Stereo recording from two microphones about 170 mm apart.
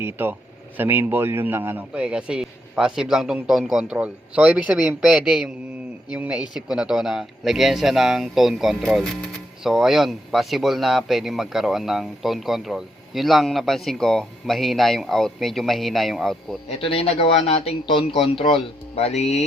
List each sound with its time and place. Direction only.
0.0 s speech: 10° right (ahead or behind)
16.6 s speech: 35° left (ahead or behind)